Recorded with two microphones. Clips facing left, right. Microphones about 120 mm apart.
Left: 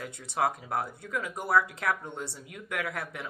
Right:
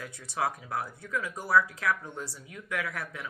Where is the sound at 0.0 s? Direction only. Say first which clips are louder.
Left 3 dB; 55° left (ahead or behind).